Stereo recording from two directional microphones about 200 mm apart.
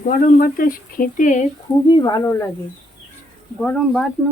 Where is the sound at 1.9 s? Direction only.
20° left (ahead or behind).